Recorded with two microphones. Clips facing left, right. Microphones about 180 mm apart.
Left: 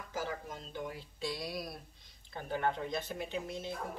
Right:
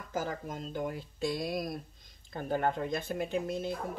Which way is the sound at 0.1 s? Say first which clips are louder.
Right 4 dB; 50° right (ahead or behind).